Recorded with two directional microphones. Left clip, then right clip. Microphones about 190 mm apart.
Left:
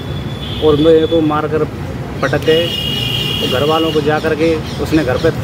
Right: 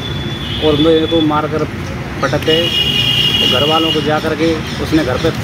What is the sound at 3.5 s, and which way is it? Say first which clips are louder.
Speech: right 2 dB; 20° left (ahead or behind).